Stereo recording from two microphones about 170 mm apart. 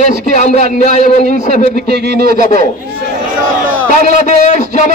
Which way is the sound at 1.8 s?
70° right (ahead or behind).